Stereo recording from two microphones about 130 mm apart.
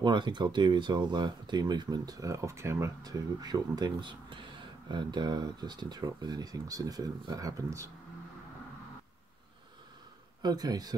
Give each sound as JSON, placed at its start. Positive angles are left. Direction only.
{"t": 0.0, "sound": "speech", "side_deg": -35}
{"t": 10.4, "sound": "speech", "side_deg": -30}